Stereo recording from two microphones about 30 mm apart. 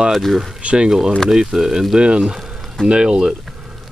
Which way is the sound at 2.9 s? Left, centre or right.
Right.